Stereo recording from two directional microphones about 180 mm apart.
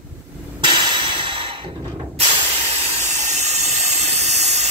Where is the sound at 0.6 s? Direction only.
25° right (ahead or behind).